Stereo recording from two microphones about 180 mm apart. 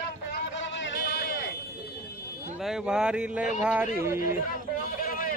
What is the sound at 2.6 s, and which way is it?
Speech, 5° right (ahead or behind).